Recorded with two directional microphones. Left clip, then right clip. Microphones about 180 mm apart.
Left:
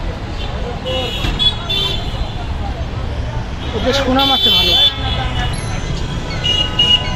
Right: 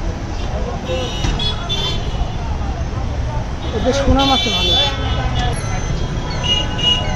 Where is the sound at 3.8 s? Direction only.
5° right (ahead or behind).